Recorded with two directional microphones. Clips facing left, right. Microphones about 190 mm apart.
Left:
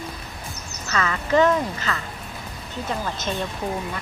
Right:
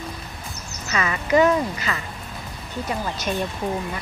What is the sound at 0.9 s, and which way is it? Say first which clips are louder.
Speech: right 1 dB; 15° right (ahead or behind).